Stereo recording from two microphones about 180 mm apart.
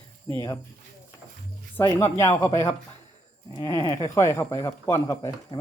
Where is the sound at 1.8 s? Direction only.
15° left (ahead or behind).